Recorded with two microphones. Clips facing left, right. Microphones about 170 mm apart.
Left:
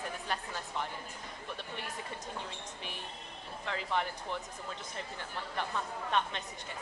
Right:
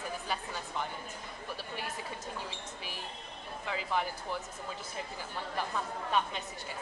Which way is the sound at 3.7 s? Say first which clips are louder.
Right 1 dB; 5° right (ahead or behind).